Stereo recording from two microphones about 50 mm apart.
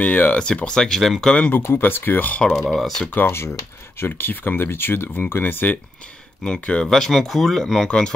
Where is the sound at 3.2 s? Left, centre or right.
Left.